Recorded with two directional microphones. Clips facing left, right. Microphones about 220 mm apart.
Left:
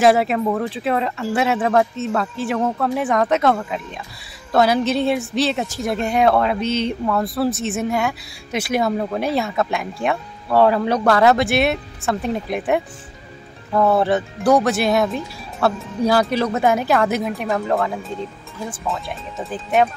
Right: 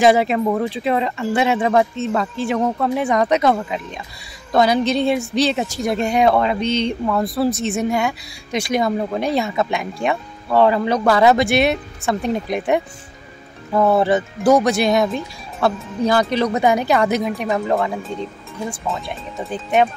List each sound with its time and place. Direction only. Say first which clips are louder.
0.0 s speech: right 1 dB; centre (ahead or behind)